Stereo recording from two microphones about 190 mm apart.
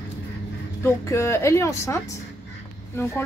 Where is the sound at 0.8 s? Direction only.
15° left (ahead or behind).